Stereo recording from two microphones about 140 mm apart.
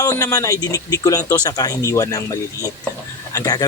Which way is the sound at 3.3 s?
25° left (ahead or behind).